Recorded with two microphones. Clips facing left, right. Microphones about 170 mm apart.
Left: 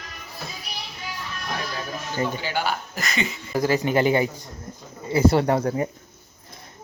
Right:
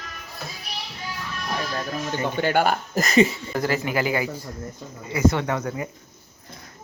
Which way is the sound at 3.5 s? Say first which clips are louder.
Left 3 dB; 15° left (ahead or behind).